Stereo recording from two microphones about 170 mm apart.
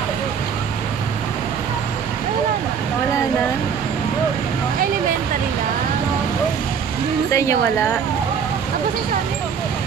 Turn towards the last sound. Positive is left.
turn(degrees=15)  # may be behind; listen again after turning